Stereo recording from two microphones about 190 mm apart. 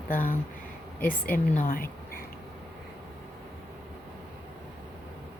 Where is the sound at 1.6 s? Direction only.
45° left (ahead or behind).